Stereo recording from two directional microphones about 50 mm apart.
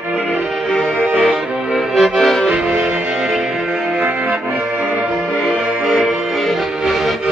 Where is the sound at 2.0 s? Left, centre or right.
Centre.